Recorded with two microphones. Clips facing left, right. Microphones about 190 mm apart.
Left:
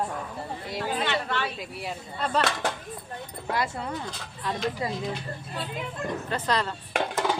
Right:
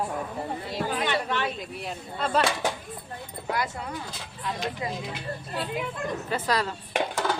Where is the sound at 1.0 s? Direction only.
15° right (ahead or behind).